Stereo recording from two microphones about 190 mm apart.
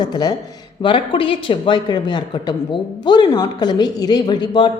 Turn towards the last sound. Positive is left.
turn(degrees=25)  # may be behind; listen again after turning